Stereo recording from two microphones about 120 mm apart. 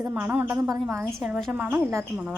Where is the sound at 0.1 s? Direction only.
15° right (ahead or behind).